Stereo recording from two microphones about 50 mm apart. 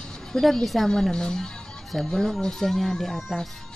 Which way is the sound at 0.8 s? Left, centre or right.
Centre.